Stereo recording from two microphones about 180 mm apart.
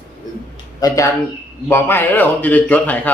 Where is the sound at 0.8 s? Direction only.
20° left (ahead or behind).